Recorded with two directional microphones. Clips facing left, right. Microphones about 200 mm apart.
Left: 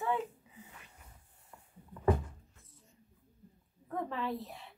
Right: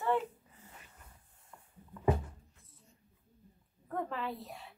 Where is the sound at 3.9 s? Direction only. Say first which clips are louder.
Left 1 dB; centre (ahead or behind).